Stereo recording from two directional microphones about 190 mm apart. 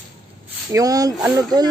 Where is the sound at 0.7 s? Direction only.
20° right (ahead or behind).